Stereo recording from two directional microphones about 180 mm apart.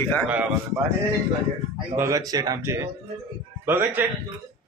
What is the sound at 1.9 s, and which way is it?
A man's voice, 15° right (ahead or behind).